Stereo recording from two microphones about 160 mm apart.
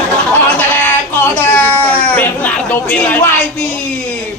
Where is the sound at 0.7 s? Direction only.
15° left (ahead or behind).